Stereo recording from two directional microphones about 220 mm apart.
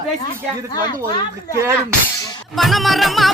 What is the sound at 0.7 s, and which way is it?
Speech, 20° left (ahead or behind).